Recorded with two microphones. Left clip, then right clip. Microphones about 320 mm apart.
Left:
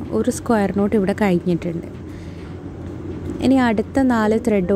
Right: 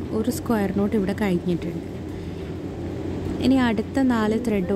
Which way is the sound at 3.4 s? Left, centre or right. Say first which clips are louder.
Left 5 dB; centre.